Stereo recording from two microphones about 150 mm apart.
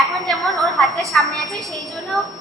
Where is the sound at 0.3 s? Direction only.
Centre (ahead or behind).